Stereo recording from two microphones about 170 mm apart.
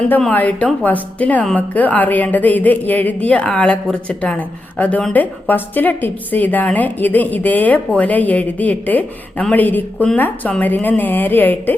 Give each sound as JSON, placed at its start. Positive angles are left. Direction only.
{"t": 0.1, "sound": "a woman's voice", "side_deg": 10}